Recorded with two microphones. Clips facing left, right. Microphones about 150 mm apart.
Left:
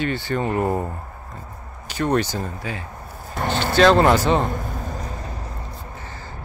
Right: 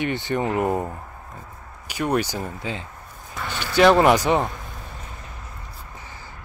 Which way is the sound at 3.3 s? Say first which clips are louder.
Left 8 dB; 55° left (ahead or behind).